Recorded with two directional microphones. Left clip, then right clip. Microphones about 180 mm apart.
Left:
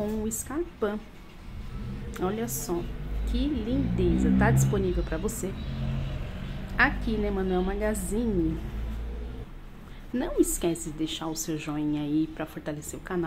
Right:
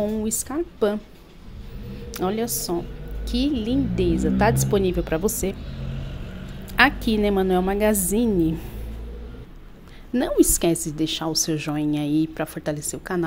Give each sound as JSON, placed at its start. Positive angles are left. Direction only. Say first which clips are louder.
{"t": 0.0, "sound": "a woman's voice", "louder": "right 6 dB", "side_deg": -30}
{"t": 2.0, "sound": "a woman's voice", "louder": "right 6 dB", "side_deg": -35}
{"t": 6.7, "sound": "a woman's voice", "louder": "right 7 dB", "side_deg": -45}
{"t": 10.1, "sound": "a woman's voice", "louder": "right 7 dB", "side_deg": -40}